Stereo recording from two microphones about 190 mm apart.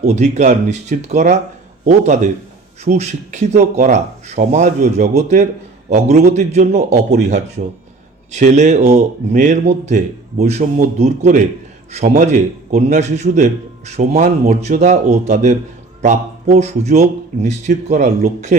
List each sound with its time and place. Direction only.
0.0 s speech: 35° right (ahead or behind)